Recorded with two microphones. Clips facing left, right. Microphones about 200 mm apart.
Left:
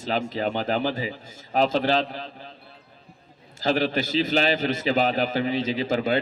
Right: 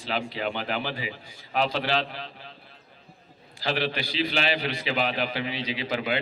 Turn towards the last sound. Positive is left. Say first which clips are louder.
# left 5 dB
turn(degrees=45)  # may be behind; listen again after turning